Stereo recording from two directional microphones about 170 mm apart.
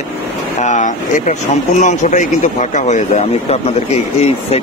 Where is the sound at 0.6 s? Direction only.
45° left (ahead or behind).